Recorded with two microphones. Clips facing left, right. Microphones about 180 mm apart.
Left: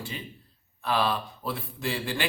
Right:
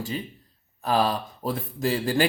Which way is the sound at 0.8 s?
40° right (ahead or behind).